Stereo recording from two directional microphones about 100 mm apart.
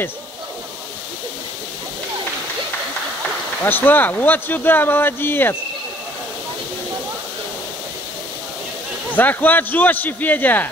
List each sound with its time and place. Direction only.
3.6 s speech: 20° left (ahead or behind)
9.1 s a man's voice: 20° left (ahead or behind)